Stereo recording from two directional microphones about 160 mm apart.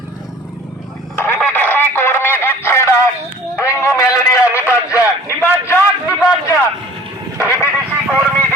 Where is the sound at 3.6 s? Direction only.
15° left (ahead or behind).